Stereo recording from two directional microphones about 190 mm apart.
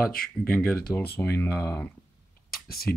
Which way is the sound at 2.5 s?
50° left (ahead or behind).